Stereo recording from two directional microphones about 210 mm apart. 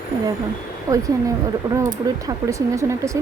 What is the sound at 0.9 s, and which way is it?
Speech, 15° right (ahead or behind).